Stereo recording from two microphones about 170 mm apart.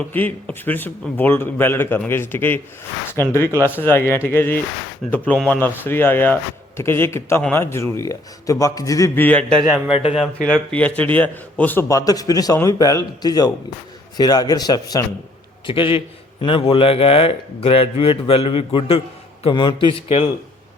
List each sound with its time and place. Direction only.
0.1 s speech: 10° left (ahead or behind)
9.6 s a man's voice: 5° right (ahead or behind)
10.4 s a man's voice: 5° left (ahead or behind); by 20.3 s 35° left (ahead or behind)